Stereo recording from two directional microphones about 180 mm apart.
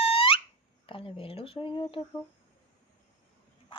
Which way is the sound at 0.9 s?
30° left (ahead or behind).